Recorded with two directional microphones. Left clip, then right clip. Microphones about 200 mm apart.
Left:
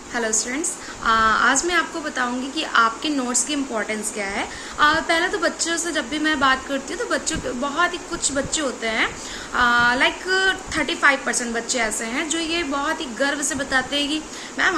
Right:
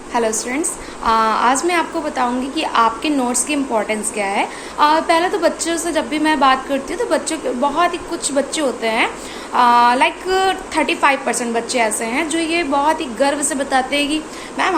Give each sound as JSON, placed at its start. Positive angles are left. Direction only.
{"t": 0.1, "sound": "a woman's voice", "side_deg": 15}